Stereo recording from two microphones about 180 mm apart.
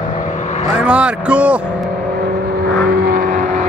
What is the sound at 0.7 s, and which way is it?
Speech, 5° right (ahead or behind).